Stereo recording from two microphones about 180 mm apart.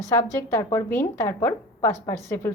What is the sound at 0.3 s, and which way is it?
A woman's voice, 15° left (ahead or behind).